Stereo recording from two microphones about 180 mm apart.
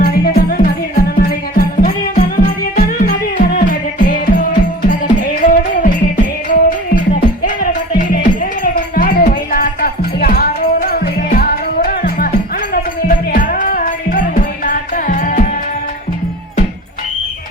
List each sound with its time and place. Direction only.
0.0 s music: 55° left (ahead or behind)